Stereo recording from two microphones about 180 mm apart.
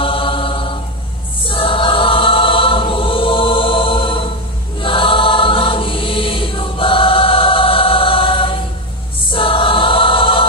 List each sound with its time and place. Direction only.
0.0 s mantra: 30° left (ahead or behind)
1.4 s choir: 30° left (ahead or behind)